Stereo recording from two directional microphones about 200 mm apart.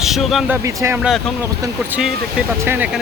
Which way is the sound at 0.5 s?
15° right (ahead or behind).